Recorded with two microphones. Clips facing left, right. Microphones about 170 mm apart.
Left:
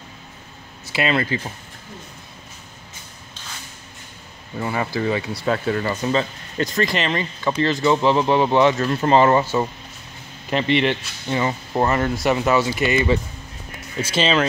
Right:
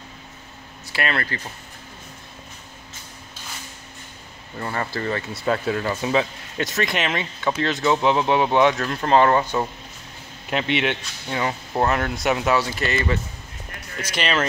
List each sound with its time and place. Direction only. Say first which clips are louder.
0.9 s speech: left 5 dB; 15° left (ahead or behind)
4.6 s speech: left 4 dB; 5° left (ahead or behind)
14.0 s speech: left 4 dB; 25° left (ahead or behind)